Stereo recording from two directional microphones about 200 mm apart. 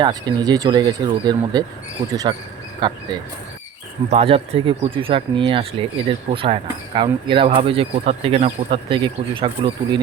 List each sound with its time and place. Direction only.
0.0 s speech: 20° right (ahead or behind)
4.1 s speech: 30° right (ahead or behind)